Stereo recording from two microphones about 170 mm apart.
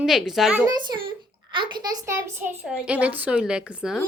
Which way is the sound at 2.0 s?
15° right (ahead or behind).